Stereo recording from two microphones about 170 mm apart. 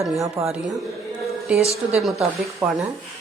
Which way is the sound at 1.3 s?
Centre (ahead or behind).